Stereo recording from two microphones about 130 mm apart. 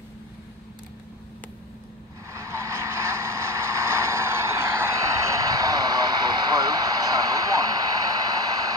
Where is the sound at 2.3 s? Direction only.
20° right (ahead or behind).